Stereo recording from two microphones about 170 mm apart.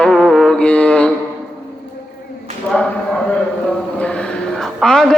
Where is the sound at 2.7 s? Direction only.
5° left (ahead or behind).